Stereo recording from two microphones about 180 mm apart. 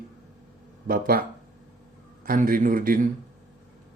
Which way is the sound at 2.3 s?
50° right (ahead or behind).